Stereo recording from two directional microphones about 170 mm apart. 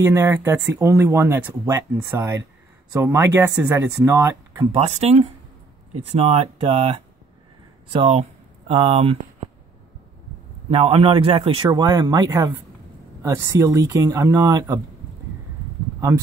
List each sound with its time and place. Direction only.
0.0 s speech: 15° right (ahead or behind)
4.6 s a man's voice: 35° right (ahead or behind)
10.7 s a man's voice: 35° right (ahead or behind)